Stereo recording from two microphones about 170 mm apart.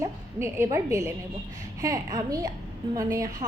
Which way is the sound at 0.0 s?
15° right (ahead or behind).